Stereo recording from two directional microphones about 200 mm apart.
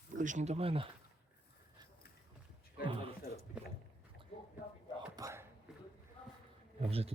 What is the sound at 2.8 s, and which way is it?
Speech, 25° right (ahead or behind).